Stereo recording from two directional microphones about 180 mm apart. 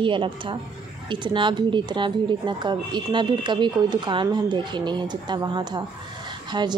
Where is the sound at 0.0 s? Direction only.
30° right (ahead or behind).